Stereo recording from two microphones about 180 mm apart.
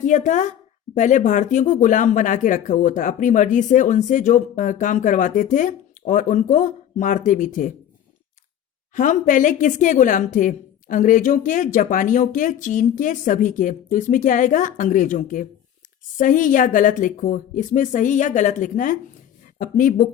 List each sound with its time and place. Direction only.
0.0 s speech: 40° left (ahead or behind)
9.0 s speech: 45° left (ahead or behind)